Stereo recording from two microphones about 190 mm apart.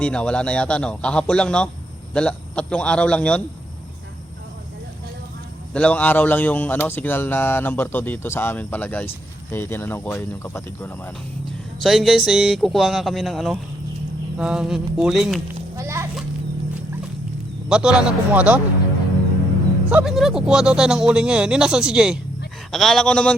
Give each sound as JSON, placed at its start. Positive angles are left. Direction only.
{"t": 0.0, "sound": "speech", "side_deg": 5}
{"t": 5.7, "sound": "speech", "side_deg": 5}
{"t": 11.8, "sound": "speech", "side_deg": 0}
{"t": 15.8, "sound": "children playing", "side_deg": -15}
{"t": 17.7, "sound": "a man's voice", "side_deg": -5}
{"t": 19.9, "sound": "speech", "side_deg": -5}